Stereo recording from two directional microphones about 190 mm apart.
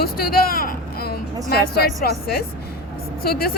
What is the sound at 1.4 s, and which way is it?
A woman's voice, 55° left (ahead or behind).